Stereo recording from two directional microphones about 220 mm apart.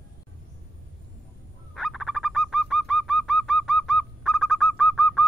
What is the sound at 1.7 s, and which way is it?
Bird, centre (ahead or behind).